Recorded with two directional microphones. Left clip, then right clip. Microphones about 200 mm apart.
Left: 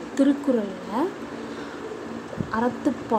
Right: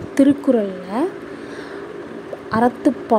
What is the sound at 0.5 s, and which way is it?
Speech, 15° right (ahead or behind).